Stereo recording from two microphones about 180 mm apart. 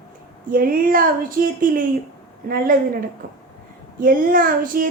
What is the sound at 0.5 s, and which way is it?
Speech, 50° right (ahead or behind).